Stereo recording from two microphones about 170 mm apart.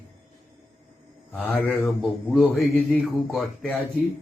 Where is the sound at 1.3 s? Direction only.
5° left (ahead or behind).